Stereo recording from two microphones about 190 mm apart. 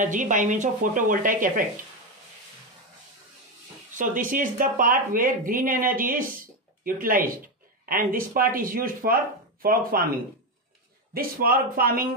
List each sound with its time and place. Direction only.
0.0 s speech: 40° right (ahead or behind)
4.0 s speech: 45° right (ahead or behind)
11.1 s speech: 50° right (ahead or behind)